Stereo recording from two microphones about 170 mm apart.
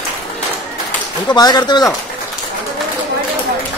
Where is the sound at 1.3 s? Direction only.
25° left (ahead or behind).